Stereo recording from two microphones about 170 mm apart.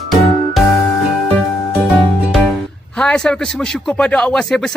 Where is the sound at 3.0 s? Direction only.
5° left (ahead or behind).